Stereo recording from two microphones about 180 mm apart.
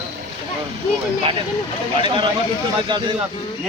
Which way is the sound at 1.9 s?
25° right (ahead or behind).